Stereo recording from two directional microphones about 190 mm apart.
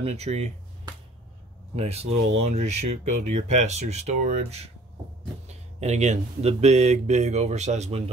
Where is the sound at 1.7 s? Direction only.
35° right (ahead or behind).